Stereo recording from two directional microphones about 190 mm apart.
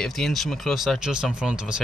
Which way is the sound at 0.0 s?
Centre (ahead or behind).